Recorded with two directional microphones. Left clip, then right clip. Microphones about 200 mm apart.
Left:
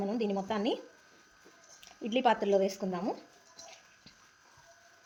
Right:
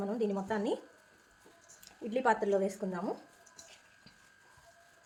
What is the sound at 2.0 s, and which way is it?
A woman's voice, 30° left (ahead or behind).